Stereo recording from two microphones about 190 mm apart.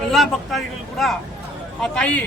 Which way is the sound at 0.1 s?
Centre (ahead or behind).